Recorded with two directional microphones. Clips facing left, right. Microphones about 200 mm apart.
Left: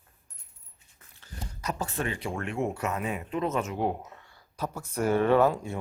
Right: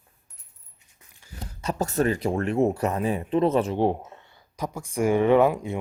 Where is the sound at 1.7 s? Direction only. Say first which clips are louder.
Right 11 dB; 40° right (ahead or behind).